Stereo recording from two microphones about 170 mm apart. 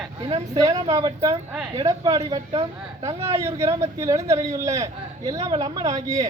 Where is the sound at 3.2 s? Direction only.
15° right (ahead or behind).